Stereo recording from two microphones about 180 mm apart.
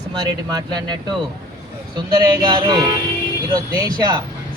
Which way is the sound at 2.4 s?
25° right (ahead or behind).